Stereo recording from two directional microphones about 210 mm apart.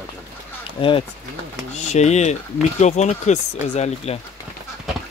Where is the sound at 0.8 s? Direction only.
25° left (ahead or behind).